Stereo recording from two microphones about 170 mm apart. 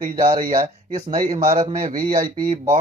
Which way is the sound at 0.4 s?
55° right (ahead or behind).